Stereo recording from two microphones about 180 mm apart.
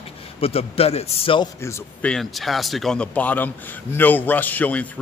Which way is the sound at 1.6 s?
5° left (ahead or behind).